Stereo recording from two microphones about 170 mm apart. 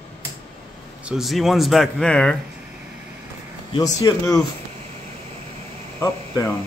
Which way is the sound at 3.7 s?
25° left (ahead or behind).